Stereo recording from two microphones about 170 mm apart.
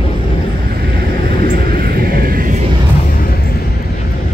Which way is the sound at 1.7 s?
60° right (ahead or behind).